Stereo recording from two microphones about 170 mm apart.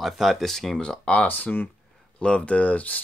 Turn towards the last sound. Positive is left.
turn(degrees=10)  # may be behind; listen again after turning